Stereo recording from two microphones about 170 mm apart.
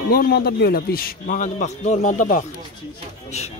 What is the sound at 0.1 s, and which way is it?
A man's voice, 65° left (ahead or behind).